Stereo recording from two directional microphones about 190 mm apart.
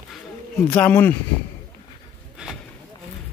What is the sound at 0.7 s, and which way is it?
Speech, 5° left (ahead or behind).